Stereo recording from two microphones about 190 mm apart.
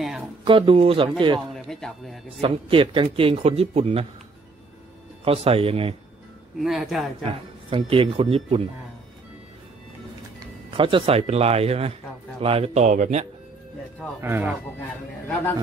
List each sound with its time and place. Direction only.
0.5 s speech: 30° right (ahead or behind)
1.5 s speech: centre (ahead or behind)
2.2 s speech: 30° right (ahead or behind)
5.2 s speech: 30° right (ahead or behind)
6.6 s speech: centre (ahead or behind)
7.7 s speech: 30° right (ahead or behind)
10.8 s speech: 25° right (ahead or behind)
14.2 s speech: 10° right (ahead or behind)